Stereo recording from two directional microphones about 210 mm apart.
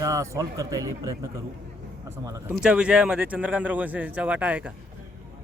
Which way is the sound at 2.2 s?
15° right (ahead or behind).